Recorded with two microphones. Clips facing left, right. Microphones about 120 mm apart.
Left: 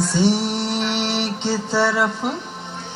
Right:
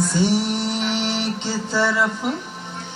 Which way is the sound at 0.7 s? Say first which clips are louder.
Left 1 dB; 65° left (ahead or behind).